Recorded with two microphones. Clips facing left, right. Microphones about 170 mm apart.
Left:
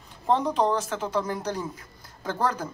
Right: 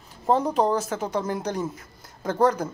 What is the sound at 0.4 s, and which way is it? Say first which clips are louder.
Speech: right 2 dB; 10° right (ahead or behind).